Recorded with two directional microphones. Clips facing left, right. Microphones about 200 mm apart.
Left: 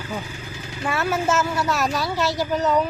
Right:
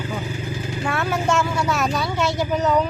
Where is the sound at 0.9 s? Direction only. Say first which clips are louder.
Even; 5° left (ahead or behind).